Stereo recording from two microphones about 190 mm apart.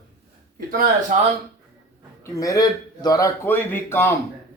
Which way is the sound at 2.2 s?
20° left (ahead or behind).